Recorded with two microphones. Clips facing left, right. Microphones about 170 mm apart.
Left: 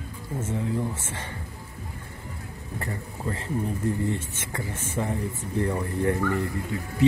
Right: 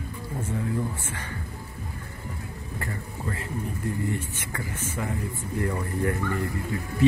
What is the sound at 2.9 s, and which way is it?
Speech, 25° left (ahead or behind).